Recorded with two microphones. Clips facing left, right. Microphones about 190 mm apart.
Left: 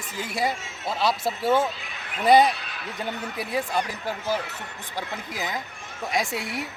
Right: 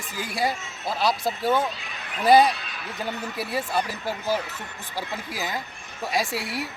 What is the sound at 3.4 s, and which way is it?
Speech, 15° left (ahead or behind).